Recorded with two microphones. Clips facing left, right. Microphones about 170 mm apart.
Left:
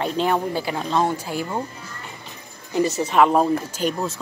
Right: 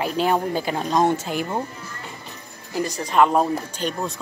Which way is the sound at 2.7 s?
5° left (ahead or behind).